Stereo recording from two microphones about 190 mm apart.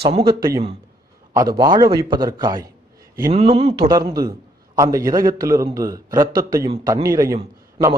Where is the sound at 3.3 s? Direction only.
30° right (ahead or behind).